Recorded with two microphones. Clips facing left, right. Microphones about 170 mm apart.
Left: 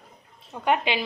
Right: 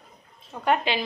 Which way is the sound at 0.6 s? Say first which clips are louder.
Even; 15° left (ahead or behind).